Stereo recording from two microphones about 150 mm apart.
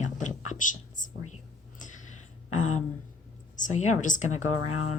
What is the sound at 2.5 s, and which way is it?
Speech, 55° left (ahead or behind).